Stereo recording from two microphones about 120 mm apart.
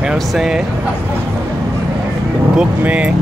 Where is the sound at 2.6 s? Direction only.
10° right (ahead or behind).